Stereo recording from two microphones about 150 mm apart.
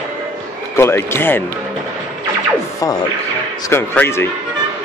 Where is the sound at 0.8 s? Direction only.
15° left (ahead or behind).